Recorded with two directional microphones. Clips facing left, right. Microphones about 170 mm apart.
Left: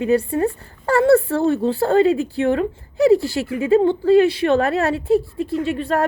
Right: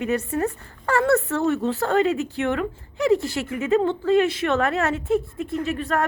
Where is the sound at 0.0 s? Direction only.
30° left (ahead or behind).